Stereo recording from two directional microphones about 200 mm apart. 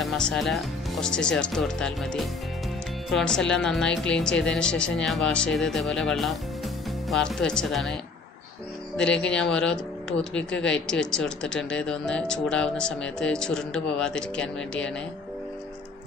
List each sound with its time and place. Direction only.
0.0 s speech: centre (ahead or behind)
9.2 s speech: 5° left (ahead or behind)